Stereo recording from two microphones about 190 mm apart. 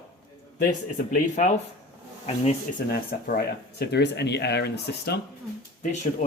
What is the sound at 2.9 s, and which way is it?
Speech, 55° left (ahead or behind).